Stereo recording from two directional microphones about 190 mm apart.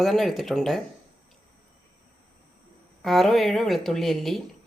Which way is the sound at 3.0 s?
Centre (ahead or behind).